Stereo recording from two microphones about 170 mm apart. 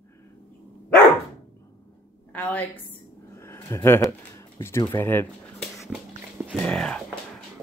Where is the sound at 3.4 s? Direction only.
15° left (ahead or behind).